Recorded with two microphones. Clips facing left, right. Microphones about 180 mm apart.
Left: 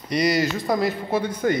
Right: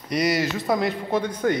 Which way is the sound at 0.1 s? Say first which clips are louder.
Left 1 dB; 5° right (ahead or behind).